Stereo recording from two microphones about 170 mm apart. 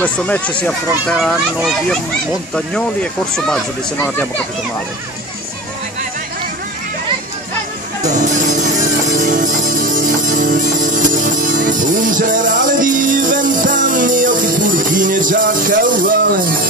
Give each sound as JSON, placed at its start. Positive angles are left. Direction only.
{"t": 0.0, "sound": "speech", "side_deg": 10}
{"t": 8.0, "sound": "music", "side_deg": -45}